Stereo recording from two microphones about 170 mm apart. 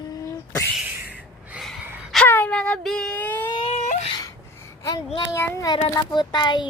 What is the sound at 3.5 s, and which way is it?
Whimper, 30° left (ahead or behind).